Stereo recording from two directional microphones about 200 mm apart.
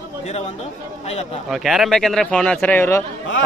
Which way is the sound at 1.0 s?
30° left (ahead or behind).